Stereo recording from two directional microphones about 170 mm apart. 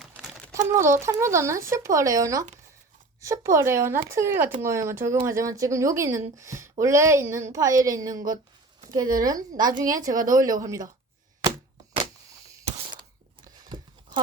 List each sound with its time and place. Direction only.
0.0 s crumpling: 5° right (ahead or behind)
0.7 s a woman's voice: 15° right (ahead or behind)